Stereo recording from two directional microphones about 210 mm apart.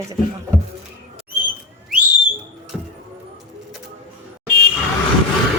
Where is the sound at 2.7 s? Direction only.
Centre (ahead or behind).